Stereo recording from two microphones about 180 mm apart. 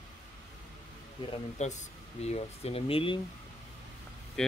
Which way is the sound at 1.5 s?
40° left (ahead or behind).